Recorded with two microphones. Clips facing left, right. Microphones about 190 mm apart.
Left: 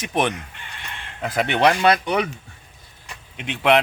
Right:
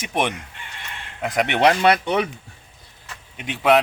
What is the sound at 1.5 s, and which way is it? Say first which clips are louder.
Speech: even; 25° right (ahead or behind).